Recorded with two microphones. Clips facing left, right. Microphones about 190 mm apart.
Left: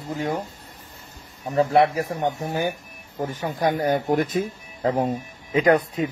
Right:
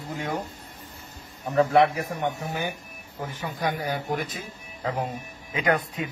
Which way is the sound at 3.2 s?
45° left (ahead or behind).